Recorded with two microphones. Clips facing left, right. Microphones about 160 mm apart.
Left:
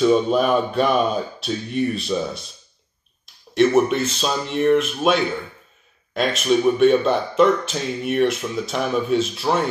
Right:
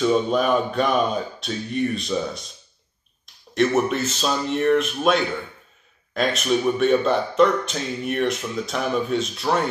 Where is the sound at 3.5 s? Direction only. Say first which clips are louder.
Left 4 dB; centre (ahead or behind).